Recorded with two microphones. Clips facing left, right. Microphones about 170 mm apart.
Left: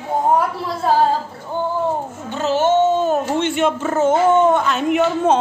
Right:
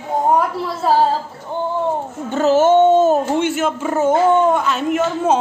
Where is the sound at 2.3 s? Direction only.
45° right (ahead or behind).